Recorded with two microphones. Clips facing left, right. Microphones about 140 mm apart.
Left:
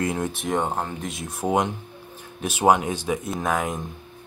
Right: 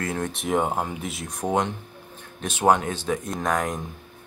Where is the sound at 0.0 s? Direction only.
15° left (ahead or behind).